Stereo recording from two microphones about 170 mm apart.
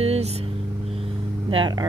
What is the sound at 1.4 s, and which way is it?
Speech, 30° right (ahead or behind).